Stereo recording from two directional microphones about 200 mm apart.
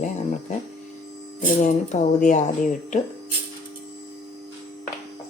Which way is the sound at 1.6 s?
40° left (ahead or behind).